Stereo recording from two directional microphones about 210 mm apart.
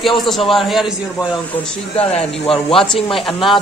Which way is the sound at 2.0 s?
30° left (ahead or behind).